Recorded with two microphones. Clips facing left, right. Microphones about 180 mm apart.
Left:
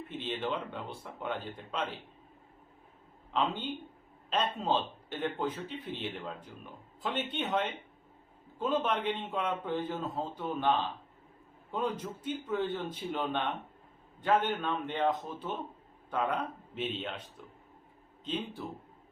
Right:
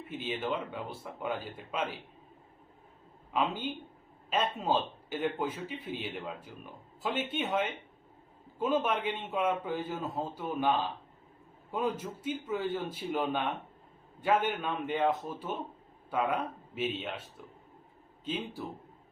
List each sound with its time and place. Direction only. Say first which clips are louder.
0.1 s speech: right 1 dB; 5° right (ahead or behind)
3.3 s a man's voice: even; 10° right (ahead or behind)
18.3 s a man's voice: even; 5° right (ahead or behind)